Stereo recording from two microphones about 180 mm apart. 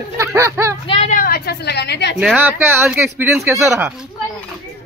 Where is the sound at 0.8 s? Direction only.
35° left (ahead or behind).